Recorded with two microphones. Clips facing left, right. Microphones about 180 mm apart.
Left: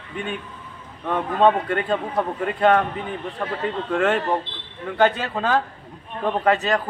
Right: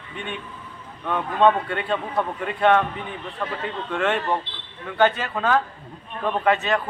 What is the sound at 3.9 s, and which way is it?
A man's voice, 40° left (ahead or behind).